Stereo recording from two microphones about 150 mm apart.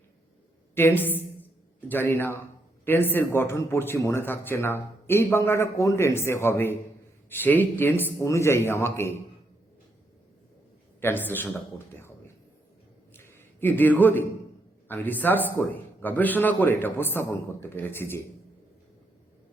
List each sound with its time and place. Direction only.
0.8 s a woman's voice: 15° left (ahead or behind)
11.0 s speech: 15° left (ahead or behind)
13.1 s a sound: 15° left (ahead or behind)
14.8 s speech: 10° left (ahead or behind)